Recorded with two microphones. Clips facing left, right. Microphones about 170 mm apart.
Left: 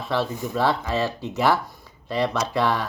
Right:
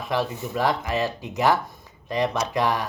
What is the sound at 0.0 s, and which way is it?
Speech, 15° right (ahead or behind).